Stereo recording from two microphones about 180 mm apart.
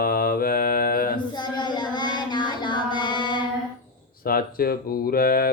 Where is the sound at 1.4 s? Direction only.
25° left (ahead or behind).